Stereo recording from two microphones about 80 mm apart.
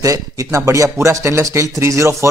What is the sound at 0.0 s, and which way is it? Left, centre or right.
Speech, right.